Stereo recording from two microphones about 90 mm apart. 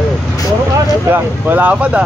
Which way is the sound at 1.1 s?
20° right (ahead or behind).